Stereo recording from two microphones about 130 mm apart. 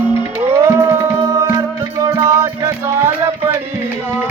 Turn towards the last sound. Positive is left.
turn(degrees=-25)  # may be behind; listen again after turning